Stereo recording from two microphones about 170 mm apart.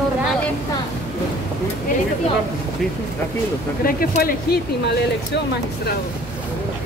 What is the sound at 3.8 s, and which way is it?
Speech, 60° left (ahead or behind).